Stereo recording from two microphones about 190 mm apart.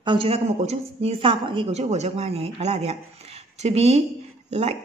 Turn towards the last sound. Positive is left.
turn(degrees=-35)  # may be behind; listen again after turning